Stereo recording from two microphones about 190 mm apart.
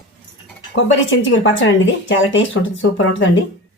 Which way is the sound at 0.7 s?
80° left.